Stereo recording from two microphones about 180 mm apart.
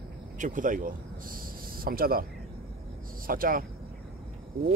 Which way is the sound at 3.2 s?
50° right (ahead or behind).